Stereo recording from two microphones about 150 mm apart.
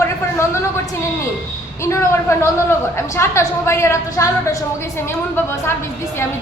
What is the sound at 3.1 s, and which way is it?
A woman's voice, 20° left (ahead or behind).